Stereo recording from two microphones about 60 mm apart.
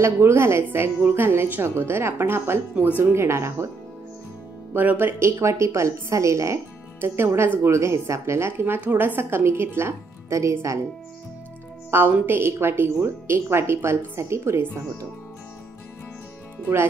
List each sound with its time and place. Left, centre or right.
0.0 s speech: right
0.7 s a woman's voice: right
4.7 s a woman's voice: right
5.2 s speech: right
7.7 s speech: right
10.3 s speech: right
11.9 s a woman's voice: right